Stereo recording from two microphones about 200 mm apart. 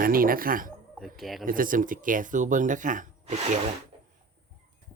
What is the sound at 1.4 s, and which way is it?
Speech, 45° right (ahead or behind).